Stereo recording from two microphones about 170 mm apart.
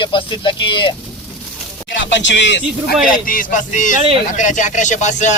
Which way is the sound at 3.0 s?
55° left (ahead or behind).